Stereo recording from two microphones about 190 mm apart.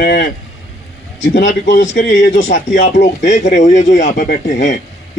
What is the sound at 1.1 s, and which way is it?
Speech, 70° left (ahead or behind).